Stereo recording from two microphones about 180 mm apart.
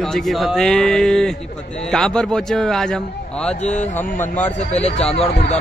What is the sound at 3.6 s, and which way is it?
Speech, 40° left (ahead or behind).